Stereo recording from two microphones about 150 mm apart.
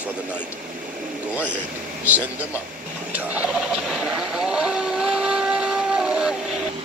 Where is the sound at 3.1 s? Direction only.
10° right (ahead or behind).